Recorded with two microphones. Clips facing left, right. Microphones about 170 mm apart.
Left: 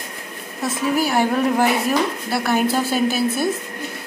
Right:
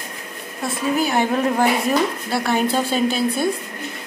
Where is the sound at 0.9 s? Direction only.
5° left (ahead or behind).